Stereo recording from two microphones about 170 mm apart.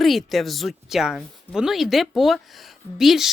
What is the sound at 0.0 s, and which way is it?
Speech, centre (ahead or behind).